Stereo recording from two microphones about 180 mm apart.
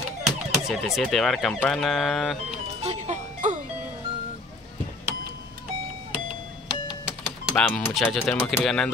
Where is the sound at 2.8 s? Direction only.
40° right (ahead or behind).